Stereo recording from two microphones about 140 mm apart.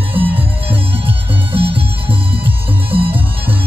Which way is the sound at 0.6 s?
40° right (ahead or behind).